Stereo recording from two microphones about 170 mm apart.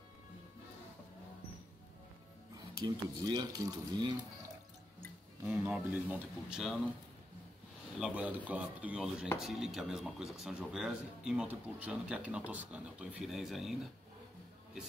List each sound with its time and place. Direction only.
2.5 s speech: 25° right (ahead or behind)
5.5 s speech: 5° right (ahead or behind)
8.0 s speech: 10° right (ahead or behind)